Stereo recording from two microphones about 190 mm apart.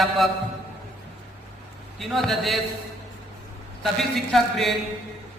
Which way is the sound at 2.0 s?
Centre (ahead or behind).